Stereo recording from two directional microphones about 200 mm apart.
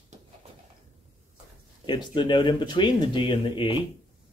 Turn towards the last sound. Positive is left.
turn(degrees=25)  # may be behind; listen again after turning